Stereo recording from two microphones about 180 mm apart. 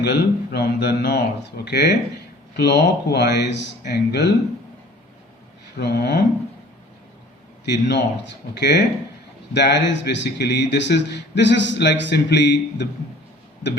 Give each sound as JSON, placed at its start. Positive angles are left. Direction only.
{"t": 0.0, "sound": "a man's voice", "side_deg": 65}
{"t": 5.7, "sound": "speech", "side_deg": 65}
{"t": 7.6, "sound": "a man's voice", "side_deg": 70}